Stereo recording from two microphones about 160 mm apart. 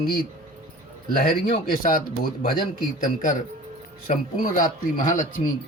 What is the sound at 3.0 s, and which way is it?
Speech, 55° left (ahead or behind).